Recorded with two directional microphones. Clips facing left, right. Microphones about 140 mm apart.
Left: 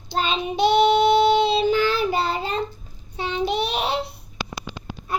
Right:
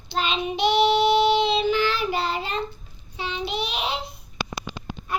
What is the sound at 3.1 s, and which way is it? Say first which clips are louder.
Child singing: left 5 dB; 50° left (ahead or behind).